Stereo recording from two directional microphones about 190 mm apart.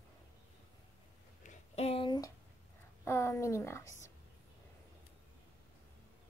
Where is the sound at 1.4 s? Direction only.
35° left (ahead or behind); by 3.9 s 15° left (ahead or behind).